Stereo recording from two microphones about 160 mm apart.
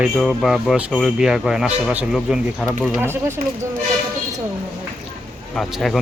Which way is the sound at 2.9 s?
15° right (ahead or behind).